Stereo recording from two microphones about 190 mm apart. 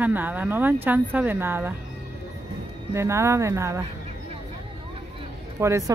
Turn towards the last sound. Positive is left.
turn(degrees=-15)  # may be behind; listen again after turning